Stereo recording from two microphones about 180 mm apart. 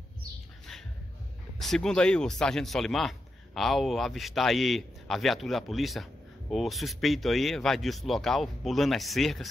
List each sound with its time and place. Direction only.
1.6 s speech: centre (ahead or behind)